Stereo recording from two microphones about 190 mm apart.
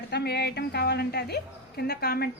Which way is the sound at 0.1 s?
60° left (ahead or behind).